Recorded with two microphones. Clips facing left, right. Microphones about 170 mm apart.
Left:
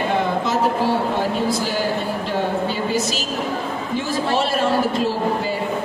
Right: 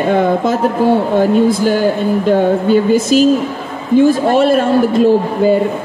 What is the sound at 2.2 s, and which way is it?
A woman's voice, 50° right (ahead or behind).